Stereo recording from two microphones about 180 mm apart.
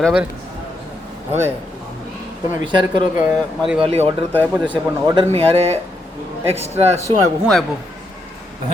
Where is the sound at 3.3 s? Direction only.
5° right (ahead or behind).